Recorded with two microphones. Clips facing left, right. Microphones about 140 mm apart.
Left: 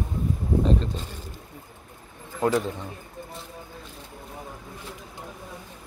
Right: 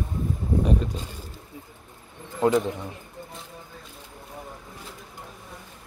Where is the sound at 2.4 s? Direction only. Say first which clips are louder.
Right 2 dB; 20° right (ahead or behind).